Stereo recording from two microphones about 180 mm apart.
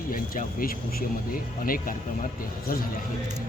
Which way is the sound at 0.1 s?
50° left (ahead or behind).